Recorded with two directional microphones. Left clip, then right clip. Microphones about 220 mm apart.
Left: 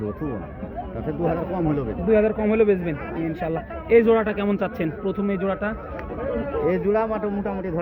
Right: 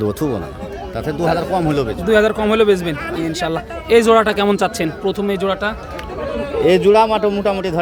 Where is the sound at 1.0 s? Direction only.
60° right (ahead or behind).